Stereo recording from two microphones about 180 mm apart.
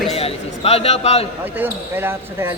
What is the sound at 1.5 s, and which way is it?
Speech, 10° right (ahead or behind).